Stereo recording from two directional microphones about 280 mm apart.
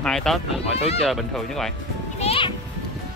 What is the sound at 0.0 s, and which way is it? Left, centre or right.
Speech, centre.